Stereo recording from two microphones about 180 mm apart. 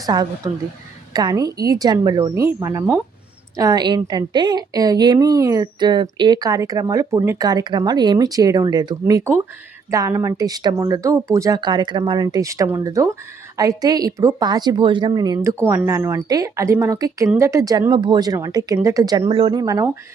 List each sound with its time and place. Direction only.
0.0 s a woman's voice: 20° right (ahead or behind)